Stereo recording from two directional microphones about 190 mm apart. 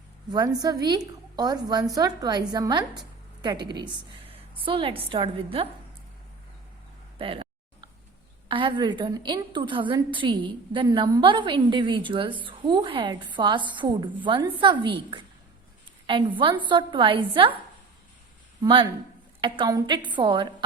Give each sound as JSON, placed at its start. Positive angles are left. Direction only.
{"t": 0.3, "sound": "a woman's voice", "side_deg": -20}
{"t": 7.2, "sound": "a sound", "side_deg": -30}
{"t": 8.4, "sound": "a woman's voice", "side_deg": -25}
{"t": 18.6, "sound": "a woman's voice", "side_deg": -25}